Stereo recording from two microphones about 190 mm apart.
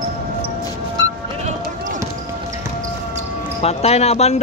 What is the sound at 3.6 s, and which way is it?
Speech, 35° left (ahead or behind).